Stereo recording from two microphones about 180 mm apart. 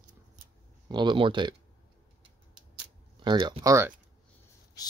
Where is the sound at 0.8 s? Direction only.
25° right (ahead or behind).